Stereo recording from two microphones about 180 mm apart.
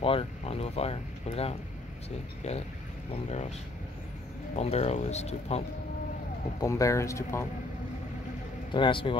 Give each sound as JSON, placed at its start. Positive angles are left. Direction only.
{"t": 0.0, "sound": "speech", "side_deg": 30}
{"t": 3.3, "sound": "speech", "side_deg": 40}
{"t": 4.6, "sound": "speech", "side_deg": 35}
{"t": 6.6, "sound": "speech", "side_deg": 15}
{"t": 8.7, "sound": "speech", "side_deg": 25}